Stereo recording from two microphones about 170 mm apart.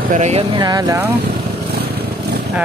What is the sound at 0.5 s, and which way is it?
Speech, 25° right (ahead or behind).